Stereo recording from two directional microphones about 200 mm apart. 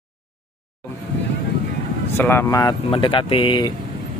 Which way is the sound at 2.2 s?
10° left (ahead or behind).